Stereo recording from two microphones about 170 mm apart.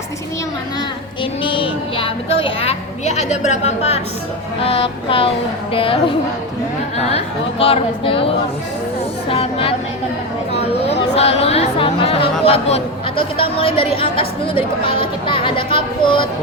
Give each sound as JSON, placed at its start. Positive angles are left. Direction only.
{"t": 1.2, "sound": "speech", "side_deg": 30}
{"t": 7.6, "sound": "speech", "side_deg": 35}
{"t": 10.5, "sound": "a sound", "side_deg": 40}
{"t": 11.2, "sound": "speech", "side_deg": 35}